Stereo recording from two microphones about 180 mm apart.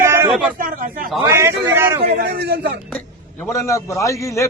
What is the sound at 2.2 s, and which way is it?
Speech, 65° right (ahead or behind).